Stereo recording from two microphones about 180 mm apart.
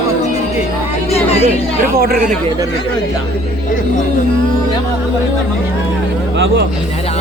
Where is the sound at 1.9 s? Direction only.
55° right (ahead or behind).